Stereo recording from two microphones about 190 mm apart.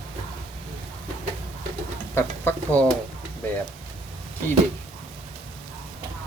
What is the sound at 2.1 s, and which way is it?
Speech, 10° left (ahead or behind).